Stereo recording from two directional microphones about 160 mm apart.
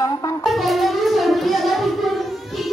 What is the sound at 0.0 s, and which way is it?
Wind instrument, 25° left (ahead or behind).